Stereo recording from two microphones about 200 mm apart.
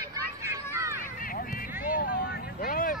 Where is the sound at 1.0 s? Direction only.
45° left (ahead or behind).